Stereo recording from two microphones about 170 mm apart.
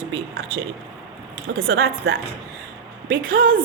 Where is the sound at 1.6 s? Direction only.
70° right (ahead or behind).